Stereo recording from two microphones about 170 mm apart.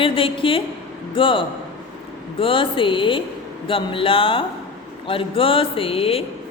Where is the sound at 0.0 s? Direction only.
30° left (ahead or behind).